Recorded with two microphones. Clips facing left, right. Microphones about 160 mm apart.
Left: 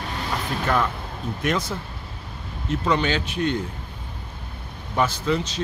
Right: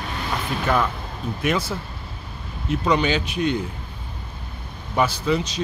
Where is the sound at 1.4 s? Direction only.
5° right (ahead or behind).